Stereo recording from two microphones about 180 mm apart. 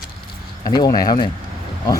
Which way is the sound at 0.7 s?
20° left (ahead or behind).